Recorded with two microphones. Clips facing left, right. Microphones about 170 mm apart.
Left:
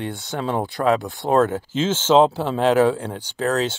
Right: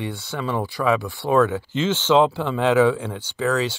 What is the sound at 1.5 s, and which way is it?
Speech, 45° left (ahead or behind).